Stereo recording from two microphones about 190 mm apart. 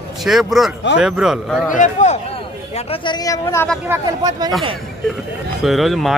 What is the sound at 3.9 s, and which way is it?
Speech, 20° right (ahead or behind).